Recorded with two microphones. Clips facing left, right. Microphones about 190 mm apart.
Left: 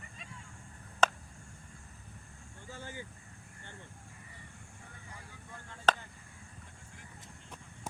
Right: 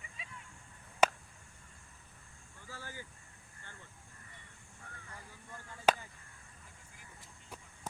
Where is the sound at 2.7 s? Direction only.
20° left (ahead or behind).